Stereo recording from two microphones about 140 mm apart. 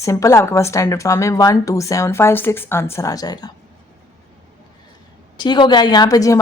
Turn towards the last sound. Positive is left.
turn(degrees=25)  # may be behind; listen again after turning